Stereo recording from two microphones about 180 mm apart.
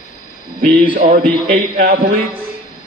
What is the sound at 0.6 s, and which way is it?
A man's voice, 50° right (ahead or behind).